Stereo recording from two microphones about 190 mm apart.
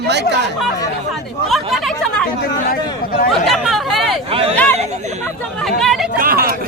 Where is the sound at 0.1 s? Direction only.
65° right (ahead or behind).